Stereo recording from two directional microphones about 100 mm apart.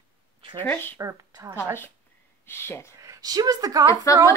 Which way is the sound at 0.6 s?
20° left (ahead or behind).